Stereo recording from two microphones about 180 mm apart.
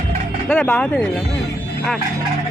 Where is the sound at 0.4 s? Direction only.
5° left (ahead or behind).